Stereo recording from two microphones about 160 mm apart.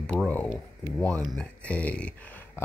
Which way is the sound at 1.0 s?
5° left (ahead or behind).